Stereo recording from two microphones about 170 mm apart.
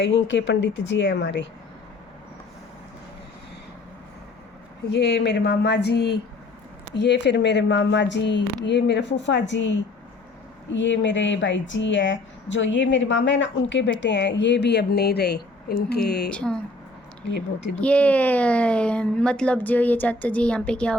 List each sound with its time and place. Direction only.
0.0 s speech: 90° left
4.9 s a woman's voice: 85° left
6.9 s a woman's voice: 90° left; by 16.3 s 70° left (ahead or behind)
16.3 s speech: 5° left (ahead or behind)
17.7 s speech: 10° left (ahead or behind)